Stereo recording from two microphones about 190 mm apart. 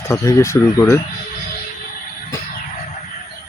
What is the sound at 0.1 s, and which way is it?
Speech, 15° left (ahead or behind).